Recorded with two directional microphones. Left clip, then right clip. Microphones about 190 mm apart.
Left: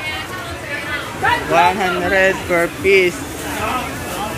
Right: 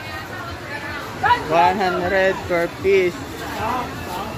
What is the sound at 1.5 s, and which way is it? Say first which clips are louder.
Speech: left 2 dB; 10° right (ahead or behind).